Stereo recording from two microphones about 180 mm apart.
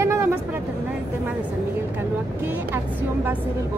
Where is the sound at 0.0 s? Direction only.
15° right (ahead or behind).